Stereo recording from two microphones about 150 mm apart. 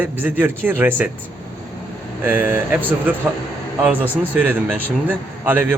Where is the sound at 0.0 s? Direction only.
15° right (ahead or behind).